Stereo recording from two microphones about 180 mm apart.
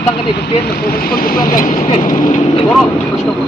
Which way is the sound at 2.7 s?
5° left (ahead or behind).